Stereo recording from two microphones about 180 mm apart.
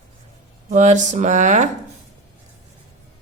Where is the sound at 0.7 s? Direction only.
40° right (ahead or behind).